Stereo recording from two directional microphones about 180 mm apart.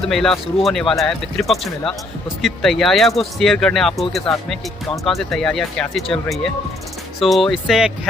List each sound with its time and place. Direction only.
0.1 s speech: centre (ahead or behind)